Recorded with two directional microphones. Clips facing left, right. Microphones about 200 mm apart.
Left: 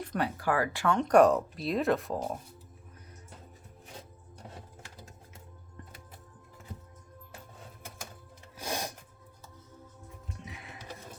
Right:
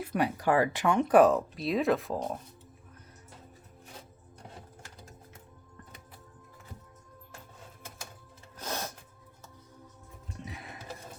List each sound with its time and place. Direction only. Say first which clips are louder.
0.0 s speech: right 3 dB; 10° right (ahead or behind)
8.5 s music: left 1 dB; 10° left (ahead or behind)
10.4 s music: right 6 dB; 40° right (ahead or behind)